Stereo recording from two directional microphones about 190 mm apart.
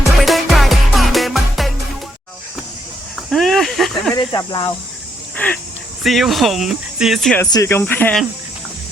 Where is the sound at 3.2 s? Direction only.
Centre (ahead or behind).